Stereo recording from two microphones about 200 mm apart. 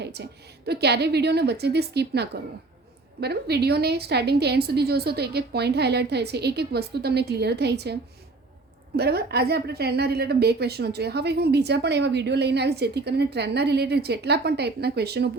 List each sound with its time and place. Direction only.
0.0 s a woman's voice: 55° right (ahead or behind)
9.0 s a woman's voice: 55° right (ahead or behind)